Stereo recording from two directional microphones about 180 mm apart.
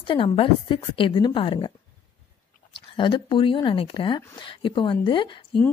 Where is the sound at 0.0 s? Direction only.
30° left (ahead or behind).